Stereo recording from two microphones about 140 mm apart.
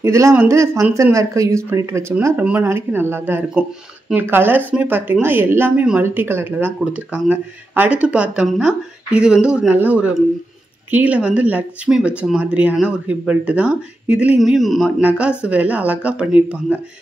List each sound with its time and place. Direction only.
0.0 s a woman's voice: 20° right (ahead or behind)